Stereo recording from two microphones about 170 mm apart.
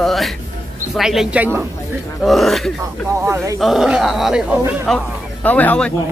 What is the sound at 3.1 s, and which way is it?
Speech, 15° right (ahead or behind).